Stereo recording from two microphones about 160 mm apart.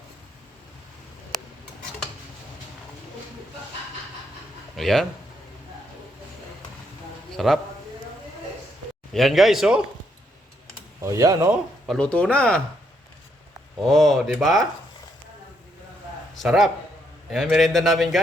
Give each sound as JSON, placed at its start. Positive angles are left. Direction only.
{"t": 4.8, "sound": "speech", "side_deg": 0}
{"t": 7.3, "sound": "a man's voice", "side_deg": 0}
{"t": 9.1, "sound": "speech", "side_deg": 0}
{"t": 11.0, "sound": "speech", "side_deg": -20}
{"t": 11.9, "sound": "speech", "side_deg": 5}
{"t": 13.8, "sound": "speech", "side_deg": 0}
{"t": 16.3, "sound": "a man's voice", "side_deg": 0}